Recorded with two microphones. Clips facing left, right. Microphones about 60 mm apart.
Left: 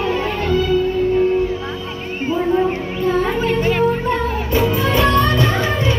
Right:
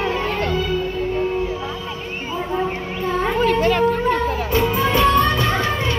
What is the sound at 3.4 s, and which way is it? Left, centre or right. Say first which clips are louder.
Children playing: even; right.